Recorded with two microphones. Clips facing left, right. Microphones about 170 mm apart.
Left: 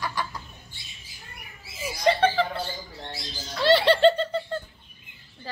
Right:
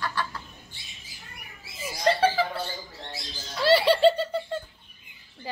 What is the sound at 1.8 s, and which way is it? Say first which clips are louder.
Laughter: left 1 dB; centre (ahead or behind).